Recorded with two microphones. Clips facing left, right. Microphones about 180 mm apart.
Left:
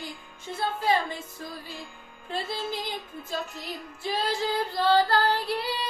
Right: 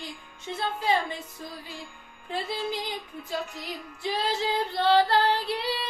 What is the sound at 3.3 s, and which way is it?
Female singing, 20° right (ahead or behind).